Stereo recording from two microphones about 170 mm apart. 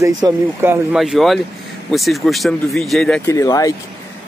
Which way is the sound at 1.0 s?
Centre (ahead or behind).